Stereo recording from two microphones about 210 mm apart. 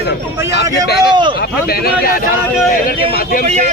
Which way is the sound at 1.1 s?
20° right (ahead or behind).